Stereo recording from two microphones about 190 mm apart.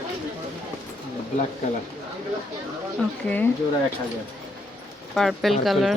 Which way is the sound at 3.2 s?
10° left (ahead or behind).